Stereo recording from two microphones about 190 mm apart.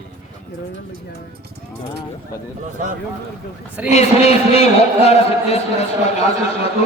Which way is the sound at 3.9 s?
35° left (ahead or behind).